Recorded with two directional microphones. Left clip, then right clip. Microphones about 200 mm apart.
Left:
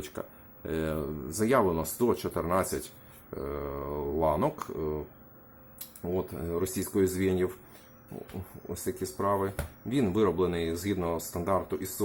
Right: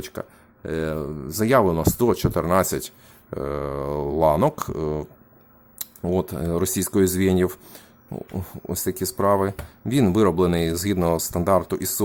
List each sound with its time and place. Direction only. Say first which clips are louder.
0.0 s speech: right 6 dB; 35° right (ahead or behind)
8.7 s speech: right 8 dB; 50° right (ahead or behind)